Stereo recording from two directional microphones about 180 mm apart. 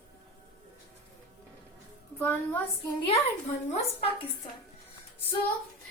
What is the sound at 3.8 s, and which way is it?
Speech, 30° left (ahead or behind).